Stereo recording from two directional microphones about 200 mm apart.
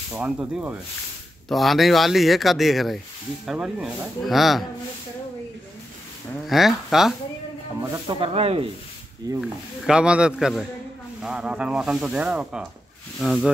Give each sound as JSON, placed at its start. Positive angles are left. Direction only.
{"t": 0.1, "sound": "speech", "side_deg": -5}
{"t": 6.4, "sound": "speech", "side_deg": 0}
{"t": 7.8, "sound": "speech", "side_deg": -20}
{"t": 9.4, "sound": "speech", "side_deg": -5}